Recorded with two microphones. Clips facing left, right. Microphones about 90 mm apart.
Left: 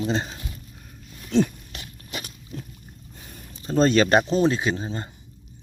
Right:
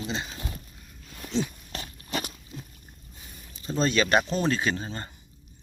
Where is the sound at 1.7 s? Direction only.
40° right (ahead or behind).